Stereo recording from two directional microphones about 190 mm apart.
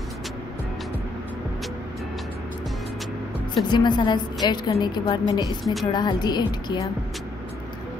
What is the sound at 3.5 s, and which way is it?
A woman's voice, 25° left (ahead or behind).